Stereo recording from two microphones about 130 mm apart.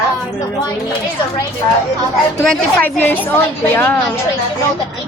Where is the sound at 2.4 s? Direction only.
5° left (ahead or behind).